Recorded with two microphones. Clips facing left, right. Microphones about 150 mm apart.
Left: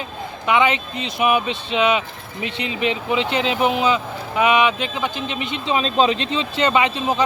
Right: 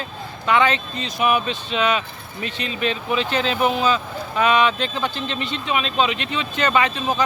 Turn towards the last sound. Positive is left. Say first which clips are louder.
# left 1 dB
turn(degrees=25)  # may be behind; listen again after turning